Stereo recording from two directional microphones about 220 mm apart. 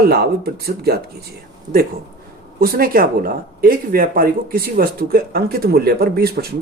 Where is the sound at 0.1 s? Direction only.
45° right (ahead or behind).